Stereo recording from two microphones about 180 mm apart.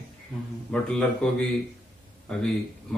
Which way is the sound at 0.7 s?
5° left (ahead or behind).